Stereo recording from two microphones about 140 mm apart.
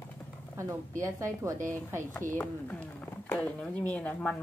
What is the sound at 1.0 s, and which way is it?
Speech, 20° right (ahead or behind).